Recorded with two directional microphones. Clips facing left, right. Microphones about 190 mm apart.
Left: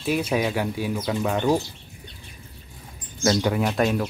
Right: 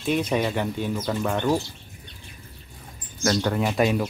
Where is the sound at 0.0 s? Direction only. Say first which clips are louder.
Even; 5° left (ahead or behind).